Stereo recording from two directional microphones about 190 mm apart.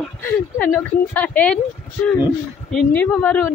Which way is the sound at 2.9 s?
10° left (ahead or behind).